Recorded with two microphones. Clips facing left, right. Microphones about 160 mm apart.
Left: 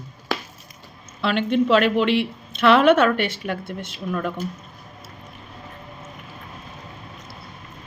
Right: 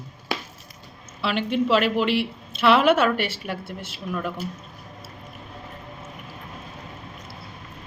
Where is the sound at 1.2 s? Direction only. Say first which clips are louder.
Left 3 dB; 5° right (ahead or behind).